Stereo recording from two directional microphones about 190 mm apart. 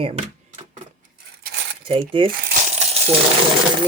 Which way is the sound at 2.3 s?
45° right (ahead or behind).